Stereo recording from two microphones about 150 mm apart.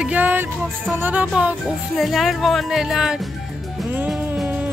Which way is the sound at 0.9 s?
10° right (ahead or behind).